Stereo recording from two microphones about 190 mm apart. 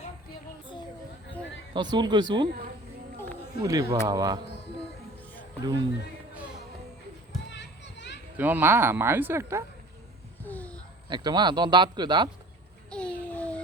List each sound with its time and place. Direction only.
1.7 s speech: 25° right (ahead or behind)
3.6 s speech: 20° right (ahead or behind)
5.6 s speech: 20° right (ahead or behind)
7.5 s children playing: 65° left (ahead or behind)
8.4 s speech: 10° right (ahead or behind)
10.4 s a sound: 10° left (ahead or behind)
11.1 s speech: 20° right (ahead or behind)
12.9 s a sound: 5° left (ahead or behind)